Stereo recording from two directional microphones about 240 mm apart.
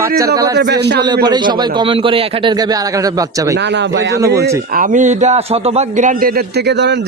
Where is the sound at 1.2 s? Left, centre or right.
Centre.